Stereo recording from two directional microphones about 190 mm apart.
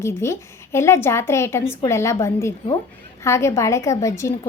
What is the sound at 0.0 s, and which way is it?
A woman's voice, 15° left (ahead or behind).